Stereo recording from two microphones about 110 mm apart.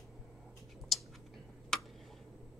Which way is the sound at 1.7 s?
5° left (ahead or behind).